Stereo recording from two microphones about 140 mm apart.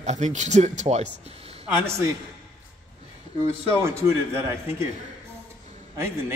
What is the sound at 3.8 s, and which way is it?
Speech, 20° right (ahead or behind).